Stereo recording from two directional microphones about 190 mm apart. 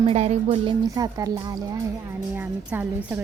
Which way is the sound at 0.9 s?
20° right (ahead or behind).